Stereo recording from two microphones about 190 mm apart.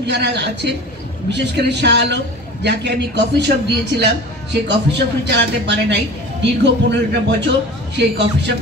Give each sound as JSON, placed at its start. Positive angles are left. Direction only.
{"t": 0.0, "sound": "a man's voice", "side_deg": -65}